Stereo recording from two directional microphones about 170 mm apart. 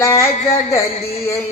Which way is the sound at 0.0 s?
15° left (ahead or behind).